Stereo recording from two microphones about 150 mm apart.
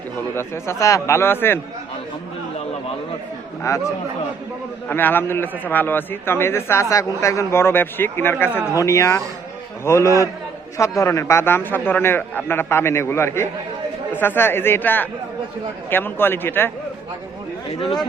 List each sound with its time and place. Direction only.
0.3 s a man's voice: 15° left (ahead or behind)
3.6 s speech: 20° left (ahead or behind)
4.9 s a man's voice: 15° left (ahead or behind)